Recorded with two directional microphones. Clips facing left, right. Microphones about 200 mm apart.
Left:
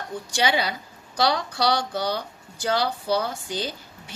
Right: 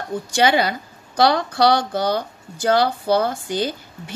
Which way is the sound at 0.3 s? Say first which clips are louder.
Right 6 dB; 50° right (ahead or behind).